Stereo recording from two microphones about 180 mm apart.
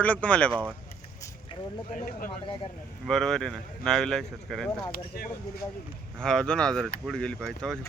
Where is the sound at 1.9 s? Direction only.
45° left (ahead or behind).